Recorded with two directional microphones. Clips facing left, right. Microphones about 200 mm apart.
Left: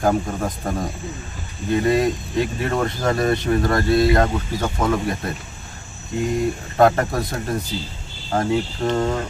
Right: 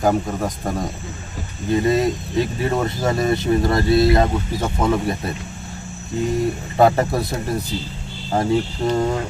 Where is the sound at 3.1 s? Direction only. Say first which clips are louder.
Even; 20° right (ahead or behind).